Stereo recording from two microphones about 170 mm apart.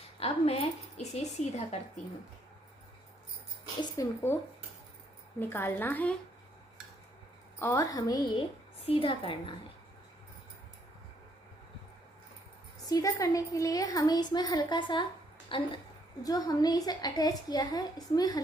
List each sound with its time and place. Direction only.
0.2 s a woman's voice: 35° left (ahead or behind)
3.8 s a woman's voice: 20° left (ahead or behind)
5.4 s a woman's voice: 10° left (ahead or behind)
7.6 s a woman's voice: 20° left (ahead or behind)
12.9 s a woman's voice: 20° left (ahead or behind)